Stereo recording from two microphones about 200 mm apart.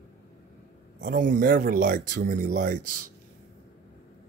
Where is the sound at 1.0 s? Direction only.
40° right (ahead or behind).